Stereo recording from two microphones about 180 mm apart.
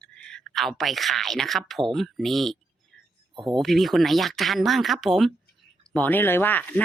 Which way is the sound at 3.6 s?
Centre (ahead or behind).